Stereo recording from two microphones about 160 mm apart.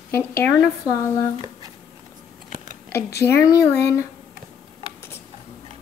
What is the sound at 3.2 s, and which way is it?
Speech, 20° left (ahead or behind).